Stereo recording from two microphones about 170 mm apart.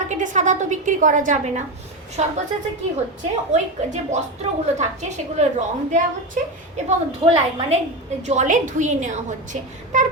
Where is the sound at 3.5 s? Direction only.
40° right (ahead or behind).